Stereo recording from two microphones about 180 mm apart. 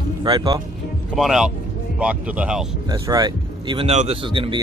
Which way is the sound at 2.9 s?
25° right (ahead or behind).